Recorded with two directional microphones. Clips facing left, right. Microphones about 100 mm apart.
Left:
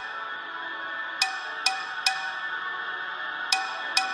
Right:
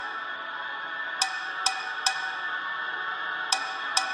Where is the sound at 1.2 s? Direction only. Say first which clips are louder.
Right 1 dB; 35° right (ahead or behind).